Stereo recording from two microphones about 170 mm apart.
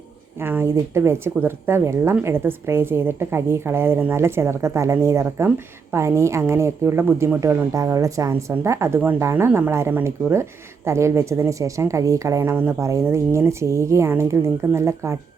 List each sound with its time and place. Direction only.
0.3 s a woman's voice: 15° right (ahead or behind)